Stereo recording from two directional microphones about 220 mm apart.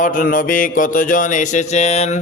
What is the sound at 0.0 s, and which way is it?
Speech, 40° left (ahead or behind).